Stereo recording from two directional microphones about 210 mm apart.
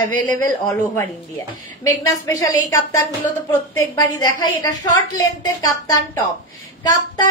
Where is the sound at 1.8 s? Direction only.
15° left (ahead or behind).